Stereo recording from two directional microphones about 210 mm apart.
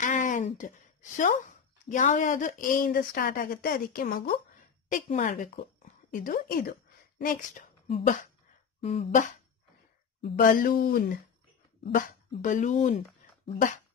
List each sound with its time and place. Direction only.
0.0 s a sound: 35° left (ahead or behind)
1.1 s a woman's voice: 40° left (ahead or behind)
10.3 s speech: 40° left (ahead or behind)
11.8 s speech: 35° left (ahead or behind)